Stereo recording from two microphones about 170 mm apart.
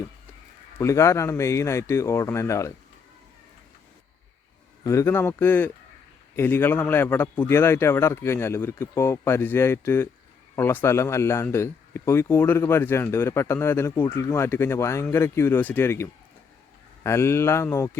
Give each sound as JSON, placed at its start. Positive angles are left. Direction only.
{"t": 0.8, "sound": "a man's voice", "side_deg": 15}
{"t": 4.8, "sound": "a man's voice", "side_deg": 15}